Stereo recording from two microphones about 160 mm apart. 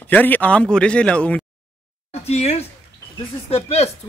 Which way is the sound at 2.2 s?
40° left (ahead or behind).